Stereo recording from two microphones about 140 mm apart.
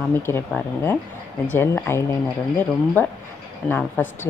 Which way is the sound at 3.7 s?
15° left (ahead or behind).